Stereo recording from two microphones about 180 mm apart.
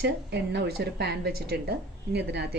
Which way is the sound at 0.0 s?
65° right (ahead or behind).